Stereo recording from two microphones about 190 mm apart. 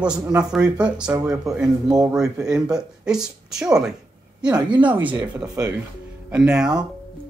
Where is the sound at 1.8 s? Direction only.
20° right (ahead or behind).